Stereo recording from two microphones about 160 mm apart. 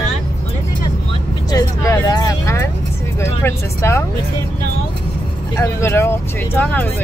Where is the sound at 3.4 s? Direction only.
15° left (ahead or behind).